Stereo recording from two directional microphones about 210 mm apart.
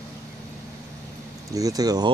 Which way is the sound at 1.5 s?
15° right (ahead or behind).